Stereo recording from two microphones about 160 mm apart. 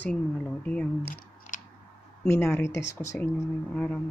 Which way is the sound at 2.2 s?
15° left (ahead or behind).